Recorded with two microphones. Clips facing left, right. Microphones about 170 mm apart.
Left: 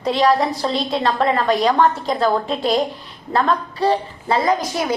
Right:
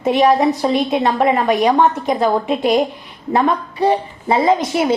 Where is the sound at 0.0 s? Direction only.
20° right (ahead or behind).